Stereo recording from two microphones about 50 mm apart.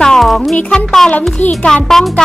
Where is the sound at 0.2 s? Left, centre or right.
Centre.